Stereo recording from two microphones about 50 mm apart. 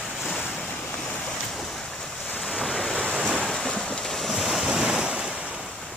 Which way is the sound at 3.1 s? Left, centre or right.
Right.